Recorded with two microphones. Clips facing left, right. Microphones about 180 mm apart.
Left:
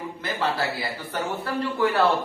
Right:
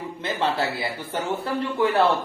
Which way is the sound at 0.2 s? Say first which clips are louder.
Right 2 dB; 25° right (ahead or behind).